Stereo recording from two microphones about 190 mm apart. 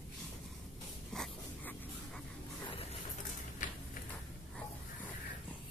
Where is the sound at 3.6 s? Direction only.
45° left (ahead or behind).